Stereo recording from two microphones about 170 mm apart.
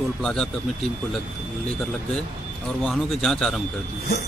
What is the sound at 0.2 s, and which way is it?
Speech, centre (ahead or behind).